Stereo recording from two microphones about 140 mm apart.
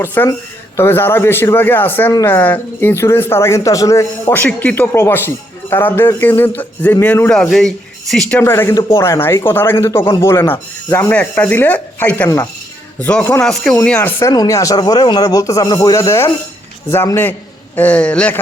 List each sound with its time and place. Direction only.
0.0 s speech: 15° left (ahead or behind)
8.3 s speech: 15° left (ahead or behind)
14.2 s speech: 20° left (ahead or behind)